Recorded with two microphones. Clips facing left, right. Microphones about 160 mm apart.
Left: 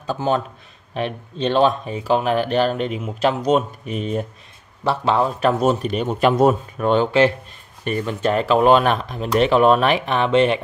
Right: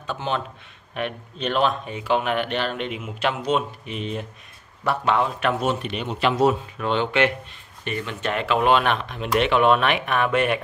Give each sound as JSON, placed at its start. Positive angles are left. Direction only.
{"t": 0.0, "sound": "speech", "side_deg": 40}
{"t": 4.8, "sound": "speech", "side_deg": 30}